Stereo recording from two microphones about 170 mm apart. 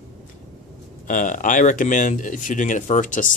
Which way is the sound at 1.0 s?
50° left (ahead or behind).